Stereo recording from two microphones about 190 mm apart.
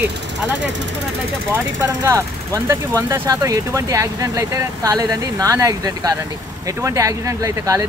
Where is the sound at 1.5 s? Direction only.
15° right (ahead or behind).